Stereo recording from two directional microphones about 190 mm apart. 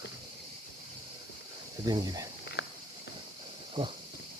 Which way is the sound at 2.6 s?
70° left (ahead or behind).